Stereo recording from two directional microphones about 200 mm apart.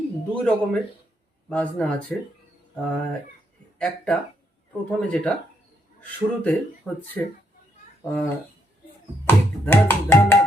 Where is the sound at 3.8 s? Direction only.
5° left (ahead or behind).